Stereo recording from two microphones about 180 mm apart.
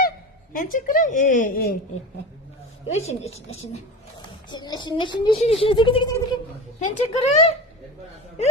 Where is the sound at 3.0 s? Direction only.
35° left (ahead or behind).